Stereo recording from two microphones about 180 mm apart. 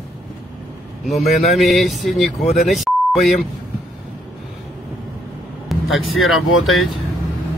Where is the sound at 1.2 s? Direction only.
40° left (ahead or behind).